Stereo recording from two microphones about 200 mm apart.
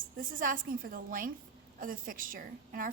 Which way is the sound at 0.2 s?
45° right (ahead or behind).